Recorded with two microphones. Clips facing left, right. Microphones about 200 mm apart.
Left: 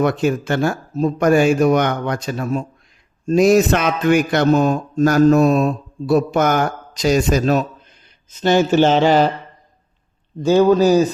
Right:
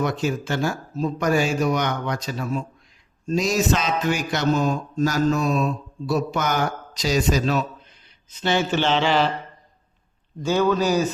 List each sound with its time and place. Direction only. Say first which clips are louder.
0.0 s a man's voice: left 6 dB; 55° left (ahead or behind)
10.4 s speech: left 8 dB; 35° left (ahead or behind)